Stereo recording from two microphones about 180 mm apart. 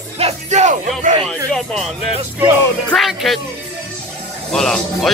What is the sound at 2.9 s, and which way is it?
Music, centre (ahead or behind).